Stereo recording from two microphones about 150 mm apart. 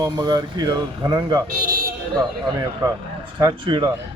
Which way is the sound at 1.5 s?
75° right (ahead or behind).